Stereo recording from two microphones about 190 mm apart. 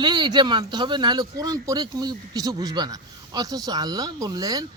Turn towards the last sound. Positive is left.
turn(degrees=-20)  # may be behind; listen again after turning